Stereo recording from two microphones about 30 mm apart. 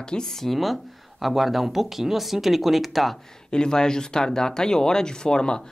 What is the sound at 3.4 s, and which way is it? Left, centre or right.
Speech, left.